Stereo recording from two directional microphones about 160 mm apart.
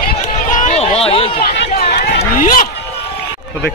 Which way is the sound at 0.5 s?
50° left (ahead or behind).